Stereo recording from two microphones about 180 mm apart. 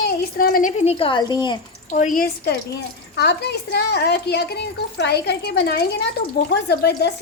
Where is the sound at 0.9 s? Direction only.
30° left (ahead or behind).